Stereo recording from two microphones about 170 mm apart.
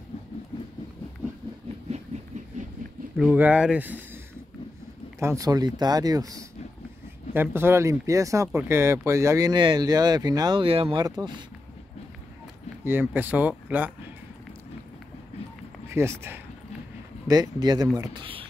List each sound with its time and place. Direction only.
3.2 s speech: 10° right (ahead or behind)
5.2 s speech: 20° right (ahead or behind)
7.5 s speech: 15° right (ahead or behind)
12.8 s speech: 10° right (ahead or behind)
15.9 s speech: 15° right (ahead or behind)
18.2 s a sound: 30° right (ahead or behind)